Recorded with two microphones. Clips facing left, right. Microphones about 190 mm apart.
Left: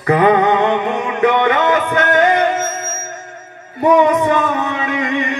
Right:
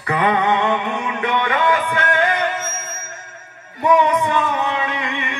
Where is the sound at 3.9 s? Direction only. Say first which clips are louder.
Left 4 dB; 40° left (ahead or behind).